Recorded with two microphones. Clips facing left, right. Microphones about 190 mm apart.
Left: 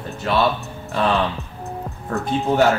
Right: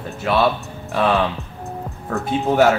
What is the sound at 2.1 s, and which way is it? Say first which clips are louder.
Speech: right 1 dB; 5° right (ahead or behind).